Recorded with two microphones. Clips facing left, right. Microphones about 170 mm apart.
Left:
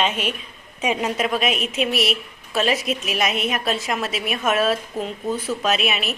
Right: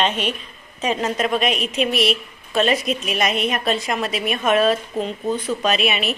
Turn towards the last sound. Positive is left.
turn(degrees=0)  # may be behind; listen again after turning